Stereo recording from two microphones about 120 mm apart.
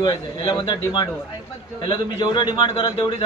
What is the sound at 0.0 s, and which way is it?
Speech, 35° left (ahead or behind).